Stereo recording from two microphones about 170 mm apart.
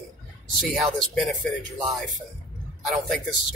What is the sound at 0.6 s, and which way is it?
Speech, centre (ahead or behind).